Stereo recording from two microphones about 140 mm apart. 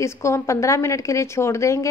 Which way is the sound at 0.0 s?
20° left (ahead or behind).